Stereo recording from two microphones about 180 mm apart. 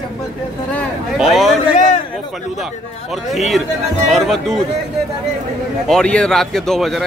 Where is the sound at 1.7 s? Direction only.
45° left (ahead or behind).